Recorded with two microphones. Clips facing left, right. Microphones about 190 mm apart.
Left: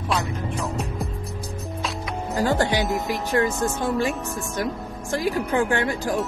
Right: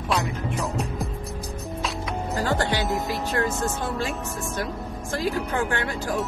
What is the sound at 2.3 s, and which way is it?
A woman's voice, 15° left (ahead or behind).